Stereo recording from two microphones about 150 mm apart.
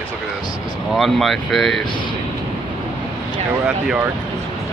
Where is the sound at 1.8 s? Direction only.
30° left (ahead or behind).